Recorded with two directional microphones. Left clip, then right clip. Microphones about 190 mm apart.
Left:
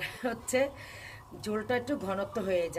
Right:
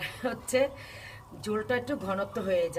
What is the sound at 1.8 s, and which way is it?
Speech, 10° left (ahead or behind).